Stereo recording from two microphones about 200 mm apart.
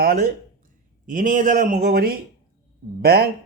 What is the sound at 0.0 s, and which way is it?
A man's voice, 45° right (ahead or behind).